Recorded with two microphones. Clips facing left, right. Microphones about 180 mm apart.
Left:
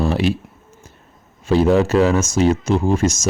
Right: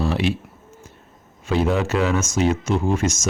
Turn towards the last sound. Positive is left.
turn(degrees=35)  # may be behind; listen again after turning